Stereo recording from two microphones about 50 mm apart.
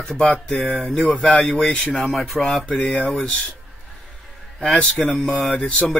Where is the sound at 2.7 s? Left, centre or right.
Left.